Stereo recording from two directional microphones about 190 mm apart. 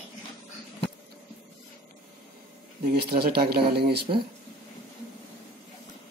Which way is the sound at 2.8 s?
55° right (ahead or behind).